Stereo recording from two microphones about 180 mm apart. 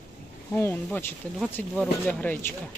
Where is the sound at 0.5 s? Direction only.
10° left (ahead or behind).